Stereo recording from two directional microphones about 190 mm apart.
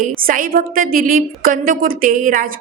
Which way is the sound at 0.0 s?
50° right (ahead or behind).